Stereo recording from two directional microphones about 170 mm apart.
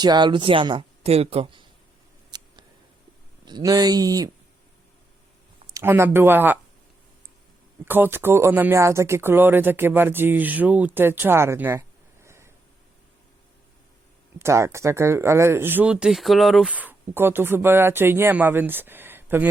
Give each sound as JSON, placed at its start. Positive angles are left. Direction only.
{"t": 0.0, "sound": "speech", "side_deg": -25}
{"t": 2.3, "sound": "scissors", "side_deg": -25}
{"t": 3.4, "sound": "speech", "side_deg": -25}
{"t": 5.7, "sound": "speech", "side_deg": -15}
{"t": 7.9, "sound": "speech", "side_deg": -10}
{"t": 14.3, "sound": "speech", "side_deg": -15}